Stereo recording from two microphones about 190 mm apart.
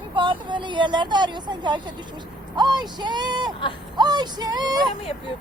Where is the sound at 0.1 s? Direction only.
25° right (ahead or behind).